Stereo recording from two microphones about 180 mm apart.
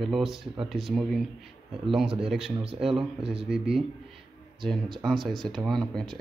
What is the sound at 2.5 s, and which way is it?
Speech, 30° right (ahead or behind).